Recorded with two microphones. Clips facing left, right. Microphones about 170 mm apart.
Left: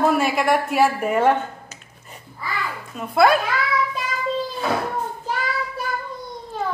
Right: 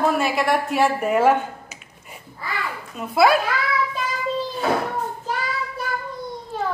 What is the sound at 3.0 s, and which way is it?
Speech, centre (ahead or behind).